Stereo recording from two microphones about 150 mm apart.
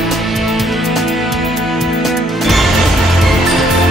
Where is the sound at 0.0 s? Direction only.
Centre (ahead or behind).